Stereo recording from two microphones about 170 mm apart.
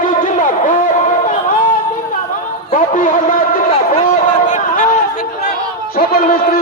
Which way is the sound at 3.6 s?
40° left (ahead or behind).